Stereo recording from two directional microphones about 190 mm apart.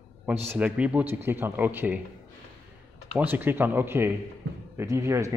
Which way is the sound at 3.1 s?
10° right (ahead or behind).